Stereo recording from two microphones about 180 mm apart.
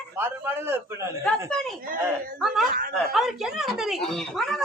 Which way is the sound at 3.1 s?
Centre (ahead or behind).